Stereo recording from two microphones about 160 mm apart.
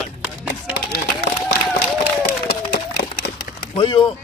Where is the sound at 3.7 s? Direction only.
30° left (ahead or behind).